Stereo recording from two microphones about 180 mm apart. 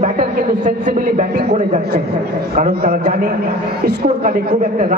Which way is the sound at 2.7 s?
60° right (ahead or behind).